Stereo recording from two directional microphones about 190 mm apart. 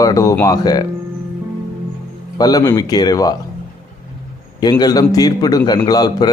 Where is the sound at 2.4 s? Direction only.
20° left (ahead or behind).